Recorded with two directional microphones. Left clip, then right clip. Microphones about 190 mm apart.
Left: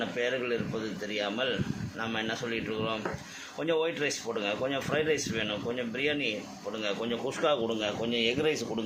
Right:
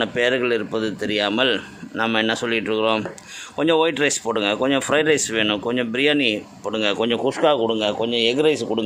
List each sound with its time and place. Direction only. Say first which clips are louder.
0.0 s speech: right 11 dB; 65° right (ahead or behind); by 8.8 s 45° right (ahead or behind)